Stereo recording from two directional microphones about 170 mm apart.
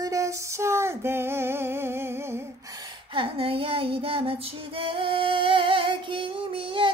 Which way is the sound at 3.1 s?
35° right (ahead or behind).